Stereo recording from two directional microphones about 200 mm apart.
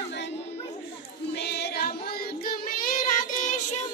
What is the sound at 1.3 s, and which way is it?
Child singing, 55° left (ahead or behind).